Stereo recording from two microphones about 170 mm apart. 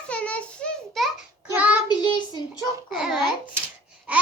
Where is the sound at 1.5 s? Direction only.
10° right (ahead or behind).